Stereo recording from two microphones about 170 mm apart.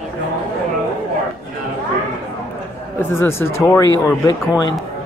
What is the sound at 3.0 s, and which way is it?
Speech, 15° left (ahead or behind).